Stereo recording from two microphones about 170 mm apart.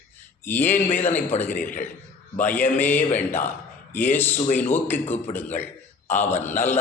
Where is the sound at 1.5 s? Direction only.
50° left (ahead or behind).